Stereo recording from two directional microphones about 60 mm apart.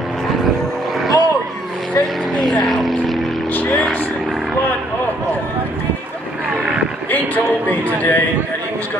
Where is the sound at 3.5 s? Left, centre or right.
Left.